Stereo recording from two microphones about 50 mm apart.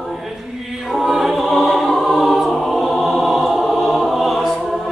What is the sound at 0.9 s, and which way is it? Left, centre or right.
Choir, centre.